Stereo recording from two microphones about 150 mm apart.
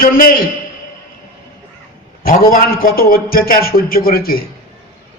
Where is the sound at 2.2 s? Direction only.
75° left (ahead or behind).